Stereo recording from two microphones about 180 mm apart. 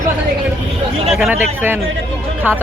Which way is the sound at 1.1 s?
Centre (ahead or behind).